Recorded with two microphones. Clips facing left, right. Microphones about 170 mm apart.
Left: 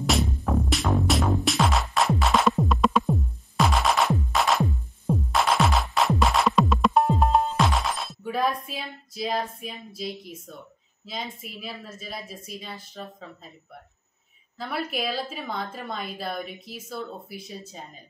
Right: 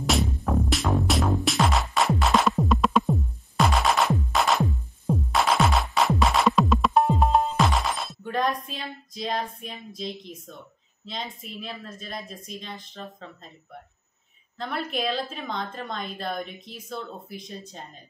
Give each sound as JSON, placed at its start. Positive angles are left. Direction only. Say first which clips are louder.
{"t": 0.0, "sound": "music", "louder": "even", "side_deg": 0}
{"t": 8.6, "sound": "a woman's voice", "louder": "even", "side_deg": 5}
{"t": 14.6, "sound": "a woman's voice", "louder": "right 1 dB", "side_deg": 5}